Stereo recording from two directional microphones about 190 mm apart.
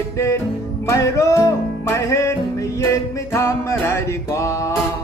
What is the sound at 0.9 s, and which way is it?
Music, 15° left (ahead or behind).